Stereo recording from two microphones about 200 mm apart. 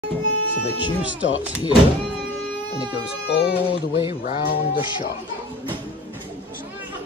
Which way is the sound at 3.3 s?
60° left (ahead or behind).